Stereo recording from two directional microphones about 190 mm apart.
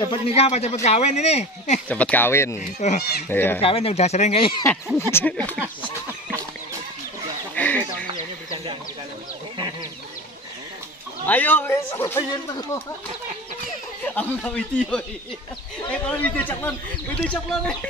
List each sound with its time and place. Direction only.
0.1 s speech: 30° left (ahead or behind)
1.9 s a man's voice: 5° left (ahead or behind)
2.6 s speech: 40° left (ahead or behind)
3.3 s a man's voice: 10° left (ahead or behind)
3.6 s speech: 30° left (ahead or behind)
5.1 s a man's voice: 10° left (ahead or behind)
7.5 s bird: 10° left (ahead or behind)
11.2 s a man's voice: 10° left (ahead or behind)
14.0 s a man's voice: 5° left (ahead or behind)